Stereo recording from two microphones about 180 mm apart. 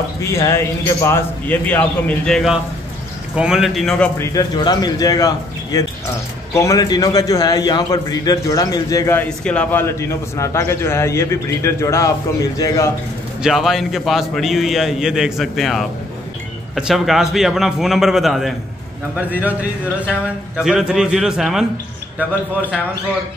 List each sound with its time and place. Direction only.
0.2 s a man's voice: 15° left (ahead or behind)
4.2 s a man's voice: 20° left (ahead or behind)
9.4 s a man's voice: 5° left (ahead or behind)
13.4 s a man's voice: centre (ahead or behind)
20.6 s a man's voice: 5° right (ahead or behind)